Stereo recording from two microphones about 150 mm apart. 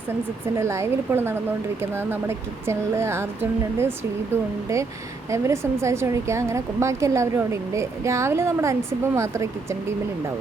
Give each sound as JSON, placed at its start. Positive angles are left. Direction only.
{"t": 0.4, "sound": "a woman's voice", "side_deg": -15}